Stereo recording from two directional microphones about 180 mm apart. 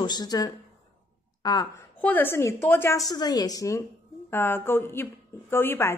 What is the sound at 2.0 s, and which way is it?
A woman's voice, 10° left (ahead or behind).